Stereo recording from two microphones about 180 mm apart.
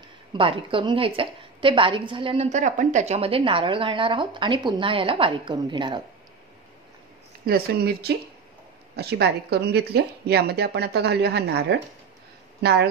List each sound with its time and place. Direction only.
0.3 s a woman's voice: 30° right (ahead or behind)
7.4 s speech: 60° right (ahead or behind)